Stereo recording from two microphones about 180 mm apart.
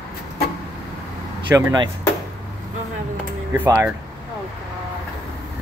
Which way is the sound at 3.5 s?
10° right (ahead or behind).